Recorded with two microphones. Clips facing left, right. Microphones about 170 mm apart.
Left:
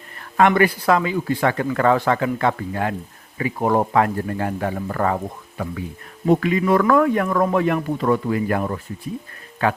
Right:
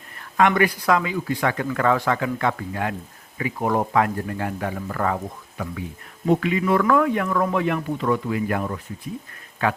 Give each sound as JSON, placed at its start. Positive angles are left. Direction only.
{"t": 0.3, "sound": "speech", "side_deg": 35}
{"t": 6.2, "sound": "a man's voice", "side_deg": 45}